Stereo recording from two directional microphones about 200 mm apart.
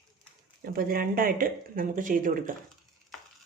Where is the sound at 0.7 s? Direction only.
45° right (ahead or behind).